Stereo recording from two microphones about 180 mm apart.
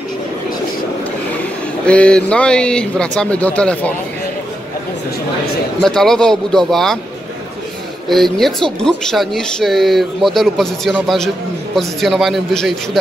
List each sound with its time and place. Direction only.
1.9 s speech: 5° left (ahead or behind)
5.8 s speech: 5° left (ahead or behind)
8.1 s speech: centre (ahead or behind)